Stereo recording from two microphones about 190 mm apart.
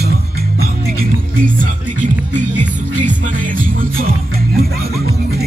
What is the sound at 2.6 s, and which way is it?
Music, 40° right (ahead or behind).